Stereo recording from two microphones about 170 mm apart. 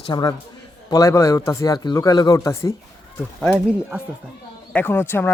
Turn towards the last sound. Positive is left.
turn(degrees=10)  # may be behind; listen again after turning